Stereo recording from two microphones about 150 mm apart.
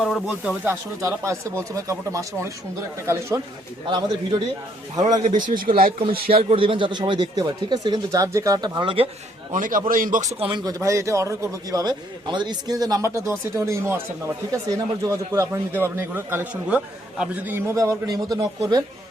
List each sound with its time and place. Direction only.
0.0 s speech: 5° right (ahead or behind)
0.7 s a man's voice: 20° right (ahead or behind)
3.8 s a man's voice: 30° right (ahead or behind)
5.2 s a man's voice: 60° right (ahead or behind)
6.3 s a man's voice: 40° right (ahead or behind)
9.5 s a man's voice: 65° right (ahead or behind)
10.4 s a man's voice: 30° right (ahead or behind); by 17.6 s 10° right (ahead or behind)
17.7 s a man's voice: 25° right (ahead or behind)